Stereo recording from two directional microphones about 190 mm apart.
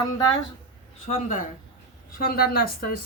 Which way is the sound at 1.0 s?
40° left (ahead or behind).